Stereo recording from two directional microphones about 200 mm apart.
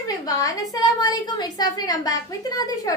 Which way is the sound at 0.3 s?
15° left (ahead or behind).